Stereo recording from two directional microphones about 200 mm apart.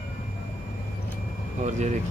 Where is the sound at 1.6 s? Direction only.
35° right (ahead or behind).